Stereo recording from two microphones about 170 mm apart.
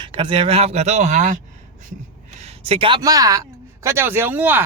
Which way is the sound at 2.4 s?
35° right (ahead or behind).